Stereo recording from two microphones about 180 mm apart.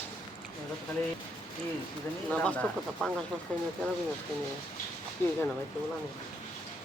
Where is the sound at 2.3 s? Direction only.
5° left (ahead or behind).